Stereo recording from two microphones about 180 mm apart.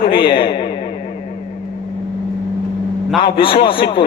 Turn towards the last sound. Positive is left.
turn(degrees=30)  # may be behind; listen again after turning